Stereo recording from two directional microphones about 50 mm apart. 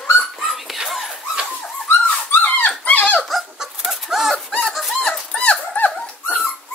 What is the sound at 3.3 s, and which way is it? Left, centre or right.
Dog, centre.